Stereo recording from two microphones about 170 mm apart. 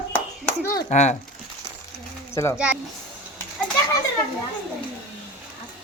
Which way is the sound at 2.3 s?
15° left (ahead or behind).